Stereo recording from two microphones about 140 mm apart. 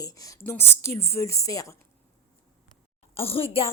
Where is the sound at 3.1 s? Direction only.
45° left (ahead or behind).